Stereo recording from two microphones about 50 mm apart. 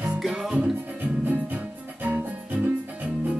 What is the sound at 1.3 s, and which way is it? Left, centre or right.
Music, right.